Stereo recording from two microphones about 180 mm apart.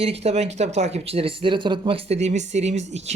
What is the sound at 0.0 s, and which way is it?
Speech, 35° right (ahead or behind).